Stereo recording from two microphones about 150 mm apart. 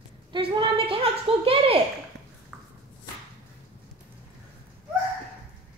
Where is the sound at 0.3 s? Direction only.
35° right (ahead or behind).